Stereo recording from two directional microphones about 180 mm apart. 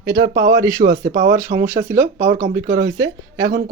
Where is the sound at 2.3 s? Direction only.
40° right (ahead or behind).